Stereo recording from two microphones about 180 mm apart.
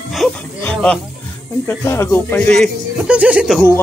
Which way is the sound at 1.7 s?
15° left (ahead or behind).